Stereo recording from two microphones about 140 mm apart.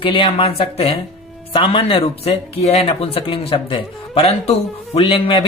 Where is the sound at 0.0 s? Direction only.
40° left (ahead or behind).